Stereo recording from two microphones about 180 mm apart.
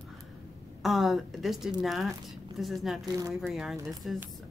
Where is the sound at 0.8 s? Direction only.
Centre (ahead or behind).